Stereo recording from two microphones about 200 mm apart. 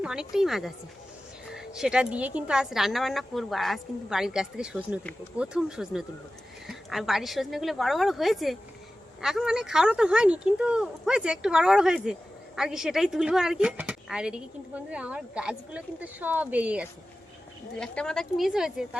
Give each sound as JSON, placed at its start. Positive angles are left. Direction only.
{"t": 0.0, "sound": "speech", "side_deg": -5}